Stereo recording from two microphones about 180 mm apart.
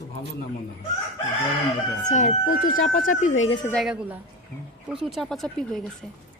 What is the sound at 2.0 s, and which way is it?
Speech, 40° left (ahead or behind).